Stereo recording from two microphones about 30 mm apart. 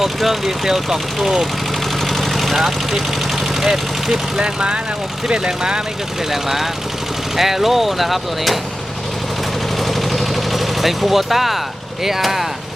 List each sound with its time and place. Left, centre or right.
0.0 s speech: centre
2.0 s vehicle: centre
3.7 s speech: right
6.3 s speech: centre
9.8 s a sound: centre
12.2 s speech: centre